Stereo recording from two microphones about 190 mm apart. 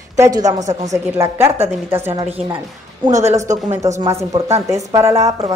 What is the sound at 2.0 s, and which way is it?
Speech, 35° right (ahead or behind).